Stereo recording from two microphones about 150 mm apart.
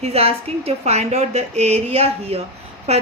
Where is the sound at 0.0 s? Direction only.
40° right (ahead or behind).